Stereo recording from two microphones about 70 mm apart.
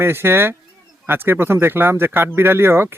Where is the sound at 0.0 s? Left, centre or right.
Right.